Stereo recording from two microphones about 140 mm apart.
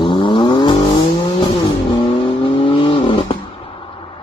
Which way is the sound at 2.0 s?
40° left (ahead or behind).